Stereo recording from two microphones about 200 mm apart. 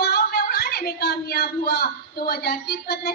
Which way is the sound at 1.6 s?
50° left (ahead or behind).